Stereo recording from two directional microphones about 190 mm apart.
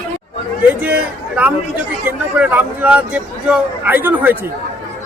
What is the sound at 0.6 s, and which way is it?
A man's voice, 10° right (ahead or behind).